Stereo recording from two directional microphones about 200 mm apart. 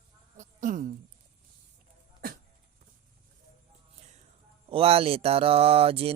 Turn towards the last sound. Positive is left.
turn(degrees=-30)  # may be behind; listen again after turning